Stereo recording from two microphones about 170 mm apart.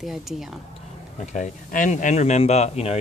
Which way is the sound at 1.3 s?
45° left (ahead or behind).